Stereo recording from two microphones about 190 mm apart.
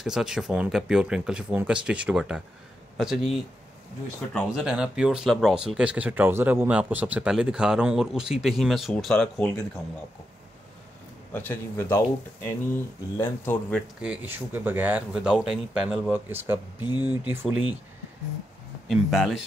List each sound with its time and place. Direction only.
0.0 s speech: centre (ahead or behind)
4.3 s speech: centre (ahead or behind)
11.3 s speech: 10° left (ahead or behind)
13.2 s speech: 10° left (ahead or behind)
14.0 s speech: 10° right (ahead or behind)
16.8 s speech: 25° left (ahead or behind)
17.3 s speech: 10° right (ahead or behind)
18.9 s speech: centre (ahead or behind)